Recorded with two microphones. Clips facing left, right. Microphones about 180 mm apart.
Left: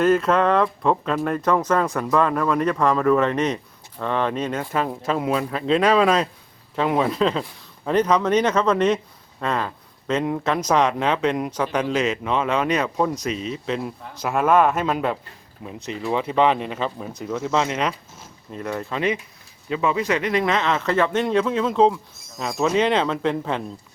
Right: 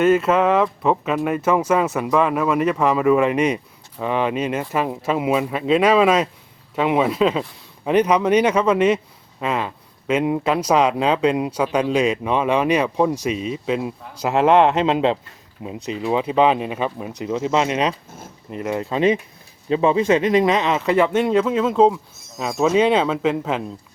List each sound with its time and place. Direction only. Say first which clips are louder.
0.0 s speech: right 2 dB; 5° right (ahead or behind)